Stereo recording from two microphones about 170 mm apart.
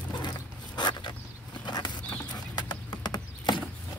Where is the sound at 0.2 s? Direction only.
25° left (ahead or behind).